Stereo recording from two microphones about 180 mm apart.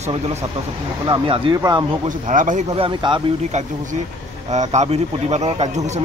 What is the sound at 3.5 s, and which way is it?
A man's voice, 40° right (ahead or behind).